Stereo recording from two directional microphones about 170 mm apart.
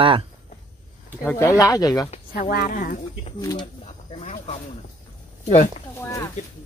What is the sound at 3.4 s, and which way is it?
Speech, 20° left (ahead or behind).